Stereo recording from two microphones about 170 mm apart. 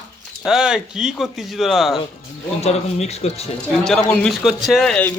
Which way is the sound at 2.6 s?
40° left (ahead or behind).